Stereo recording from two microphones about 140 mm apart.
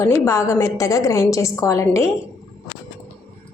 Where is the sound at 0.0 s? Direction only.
20° left (ahead or behind).